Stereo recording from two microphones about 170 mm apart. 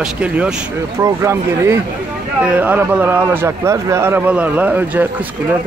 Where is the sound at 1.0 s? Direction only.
15° right (ahead or behind).